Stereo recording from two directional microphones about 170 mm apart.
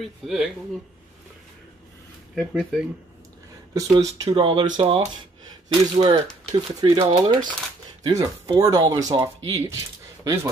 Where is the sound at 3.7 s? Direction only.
20° right (ahead or behind).